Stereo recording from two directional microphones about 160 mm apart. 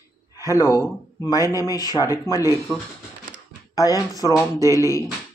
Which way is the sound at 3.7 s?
20° left (ahead or behind).